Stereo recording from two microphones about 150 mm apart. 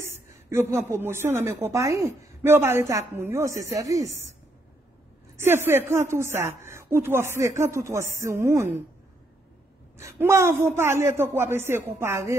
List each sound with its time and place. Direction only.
0.0 s a woman's voice: 20° right (ahead or behind)
5.4 s a woman's voice: 15° right (ahead or behind)
9.9 s a woman's voice: 15° right (ahead or behind)